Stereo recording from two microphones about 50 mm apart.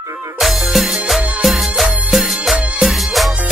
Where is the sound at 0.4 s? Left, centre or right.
Centre.